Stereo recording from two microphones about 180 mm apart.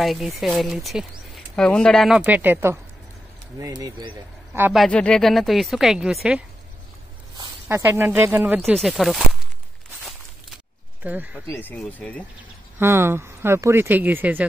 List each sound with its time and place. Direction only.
0.0 s speech: centre (ahead or behind); by 4.1 s 20° right (ahead or behind)
4.7 s speech: 5° left (ahead or behind)
7.6 s speech: 10° right (ahead or behind)
11.0 s speech: 10° right (ahead or behind)
11.5 s speech: 10° left (ahead or behind)
12.7 s speech: 15° right (ahead or behind)